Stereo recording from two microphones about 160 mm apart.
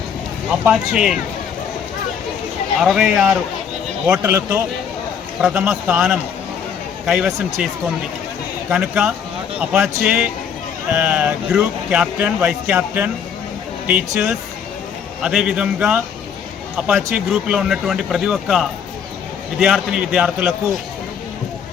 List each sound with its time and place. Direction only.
0.6 s speech: 5° right (ahead or behind)
2.8 s speech: centre (ahead or behind)
5.4 s speech: 5° right (ahead or behind)
8.7 s speech: 5° right (ahead or behind)